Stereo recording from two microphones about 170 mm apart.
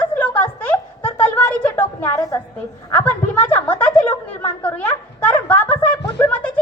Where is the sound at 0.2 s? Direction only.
10° left (ahead or behind).